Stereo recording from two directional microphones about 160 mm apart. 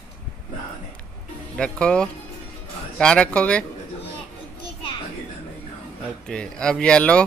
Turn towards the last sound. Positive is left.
turn(degrees=5)  # may be behind; listen again after turning